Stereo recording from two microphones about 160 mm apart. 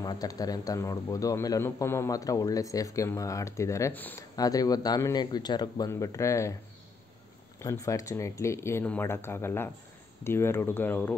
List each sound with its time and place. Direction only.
0.0 s speech: 25° left (ahead or behind)
4.4 s speech: 25° left (ahead or behind)
7.5 s speech: 20° left (ahead or behind)